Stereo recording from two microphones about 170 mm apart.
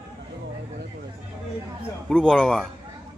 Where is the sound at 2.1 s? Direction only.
5° left (ahead or behind).